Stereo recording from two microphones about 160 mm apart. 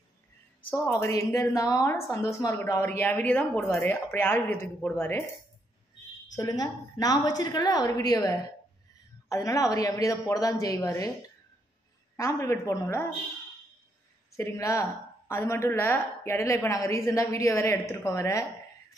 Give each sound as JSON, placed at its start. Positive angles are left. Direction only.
{"t": 0.6, "sound": "a woman's voice", "side_deg": 10}
{"t": 6.3, "sound": "a woman's voice", "side_deg": 25}
{"t": 12.2, "sound": "a woman's voice", "side_deg": 20}
{"t": 14.3, "sound": "a woman's voice", "side_deg": 20}